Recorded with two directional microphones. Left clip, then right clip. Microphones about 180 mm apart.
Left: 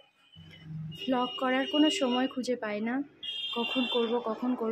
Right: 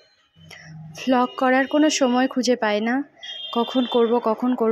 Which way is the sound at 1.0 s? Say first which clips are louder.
Right 10 dB; 40° right (ahead or behind).